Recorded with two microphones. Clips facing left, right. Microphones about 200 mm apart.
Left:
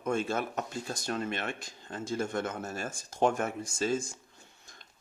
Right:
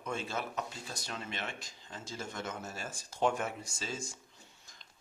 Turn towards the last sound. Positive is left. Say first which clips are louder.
# left 11 dB
turn(degrees=55)  # may be behind; listen again after turning